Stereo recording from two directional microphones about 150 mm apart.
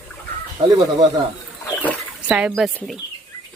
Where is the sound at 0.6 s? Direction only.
25° right (ahead or behind).